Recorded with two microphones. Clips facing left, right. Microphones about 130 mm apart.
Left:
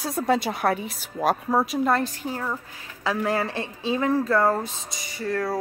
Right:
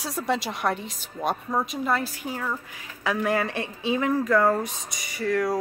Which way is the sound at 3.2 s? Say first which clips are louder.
Even; 30° left (ahead or behind).